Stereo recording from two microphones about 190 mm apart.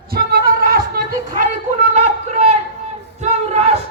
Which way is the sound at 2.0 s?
35° right (ahead or behind).